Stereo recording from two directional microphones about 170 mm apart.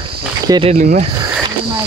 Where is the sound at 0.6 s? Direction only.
45° right (ahead or behind).